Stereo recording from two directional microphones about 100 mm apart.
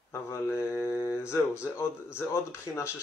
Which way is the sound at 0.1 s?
25° left (ahead or behind).